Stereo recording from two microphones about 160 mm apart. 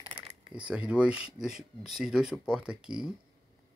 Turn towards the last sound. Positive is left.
turn(degrees=-5)  # may be behind; listen again after turning